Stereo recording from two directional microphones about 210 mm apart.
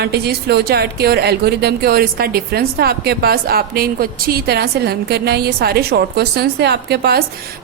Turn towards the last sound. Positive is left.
turn(degrees=-50)  # may be behind; listen again after turning